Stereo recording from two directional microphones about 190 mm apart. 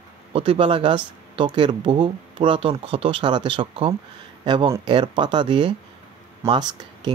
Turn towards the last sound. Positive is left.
turn(degrees=-20)  # may be behind; listen again after turning